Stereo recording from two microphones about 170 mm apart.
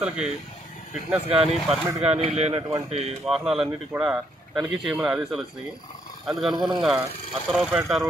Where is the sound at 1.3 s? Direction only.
35° right (ahead or behind).